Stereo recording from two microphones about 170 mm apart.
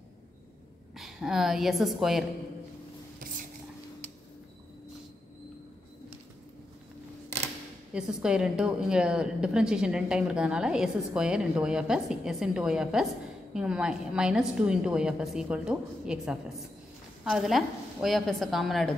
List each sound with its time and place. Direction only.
0.9 s a woman's voice: centre (ahead or behind)
7.9 s a woman's voice: 5° right (ahead or behind)